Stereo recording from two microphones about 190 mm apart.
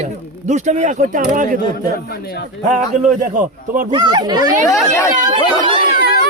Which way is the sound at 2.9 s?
40° right (ahead or behind).